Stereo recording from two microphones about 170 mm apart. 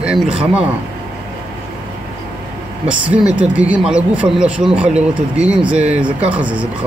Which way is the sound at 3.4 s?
10° right (ahead or behind).